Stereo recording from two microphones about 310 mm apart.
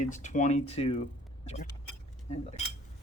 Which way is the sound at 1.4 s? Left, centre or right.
Centre.